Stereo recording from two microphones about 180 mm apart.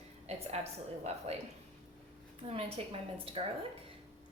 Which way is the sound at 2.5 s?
35° right (ahead or behind).